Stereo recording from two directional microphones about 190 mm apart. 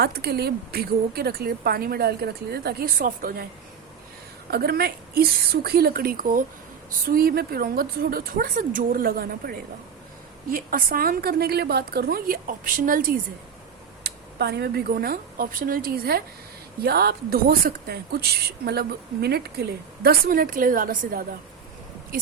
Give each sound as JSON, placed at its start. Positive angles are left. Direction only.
{"t": 0.0, "sound": "a woman's voice", "side_deg": -55}
{"t": 4.5, "sound": "a woman's voice", "side_deg": -55}
{"t": 14.0, "sound": "a woman's voice", "side_deg": -60}